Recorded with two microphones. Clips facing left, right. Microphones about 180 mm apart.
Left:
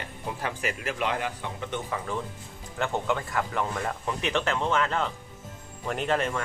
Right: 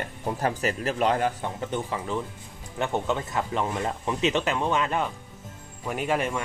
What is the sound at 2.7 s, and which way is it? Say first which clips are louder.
Speech: right 1 dB; 20° right (ahead or behind).